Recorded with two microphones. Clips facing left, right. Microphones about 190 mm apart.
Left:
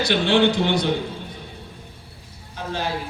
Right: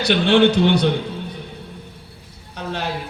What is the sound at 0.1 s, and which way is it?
Speech, 65° right (ahead or behind).